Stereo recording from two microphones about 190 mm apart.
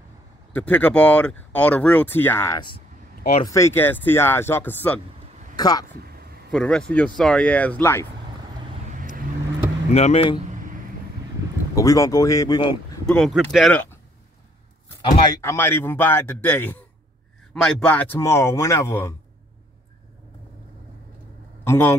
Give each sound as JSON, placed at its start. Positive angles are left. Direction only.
{"t": 0.6, "sound": "speech", "side_deg": 10}
{"t": 5.6, "sound": "speech", "side_deg": 20}
{"t": 5.9, "sound": "a sound", "side_deg": -55}
{"t": 6.5, "sound": "speech", "side_deg": 5}
{"t": 9.9, "sound": "speech", "side_deg": 30}
{"t": 11.7, "sound": "speech", "side_deg": 15}
{"t": 13.0, "sound": "speech", "side_deg": 5}
{"t": 15.0, "sound": "speech", "side_deg": 15}
{"t": 21.6, "sound": "speech", "side_deg": 10}